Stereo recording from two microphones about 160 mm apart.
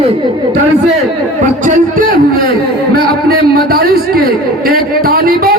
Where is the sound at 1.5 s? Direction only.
55° right (ahead or behind).